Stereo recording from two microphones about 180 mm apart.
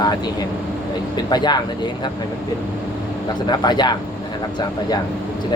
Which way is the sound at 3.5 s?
25° left (ahead or behind).